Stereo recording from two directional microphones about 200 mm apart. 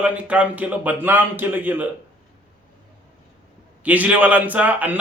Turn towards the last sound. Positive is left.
turn(degrees=-10)  # may be behind; listen again after turning